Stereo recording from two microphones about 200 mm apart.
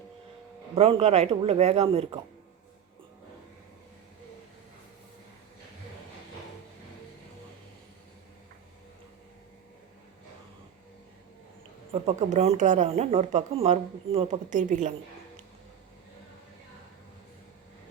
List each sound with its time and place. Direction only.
0.8 s speech: 30° right (ahead or behind)
12.0 s speech: 30° right (ahead or behind)